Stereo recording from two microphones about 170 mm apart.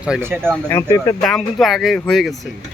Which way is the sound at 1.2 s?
5° left (ahead or behind).